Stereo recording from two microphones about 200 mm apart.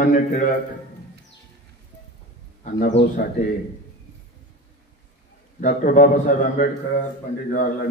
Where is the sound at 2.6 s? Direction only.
40° left (ahead or behind).